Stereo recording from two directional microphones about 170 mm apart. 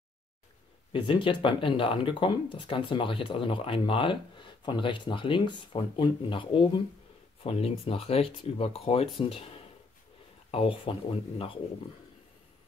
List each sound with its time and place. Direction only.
0.9 s speech: 30° left (ahead or behind)
10.5 s speech: 30° left (ahead or behind)